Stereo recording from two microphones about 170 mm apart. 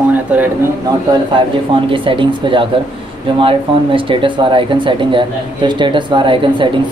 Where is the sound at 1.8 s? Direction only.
30° right (ahead or behind).